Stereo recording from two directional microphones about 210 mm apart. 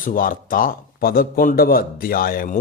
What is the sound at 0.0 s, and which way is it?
A man's voice, 40° left (ahead or behind).